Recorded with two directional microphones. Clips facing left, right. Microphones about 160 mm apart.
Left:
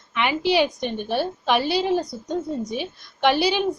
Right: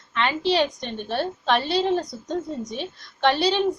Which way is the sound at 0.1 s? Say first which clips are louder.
Left 1 dB; 15° left (ahead or behind).